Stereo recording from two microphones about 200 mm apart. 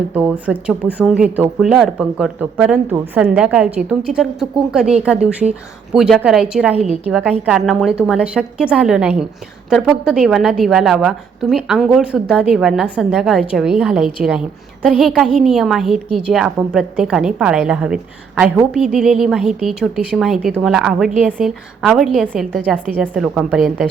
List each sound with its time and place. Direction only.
0.1 s a woman's voice: 10° right (ahead or behind)
6.7 s a woman's voice: 30° right (ahead or behind)
7.0 s a woman's voice: 10° right (ahead or behind)